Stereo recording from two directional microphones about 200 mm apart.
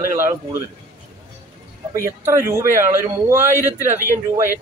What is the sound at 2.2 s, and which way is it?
Speech, 15° right (ahead or behind).